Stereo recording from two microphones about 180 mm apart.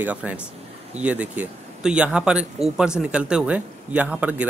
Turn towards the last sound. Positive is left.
turn(degrees=-5)  # may be behind; listen again after turning